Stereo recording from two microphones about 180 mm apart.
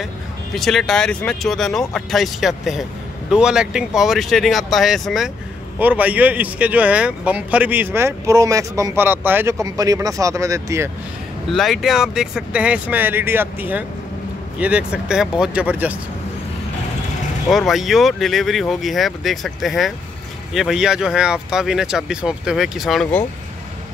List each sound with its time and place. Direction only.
0.6 s speech: centre (ahead or behind); by 10.9 s 15° right (ahead or behind)
11.5 s speech: centre (ahead or behind)
17.5 s speech: centre (ahead or behind)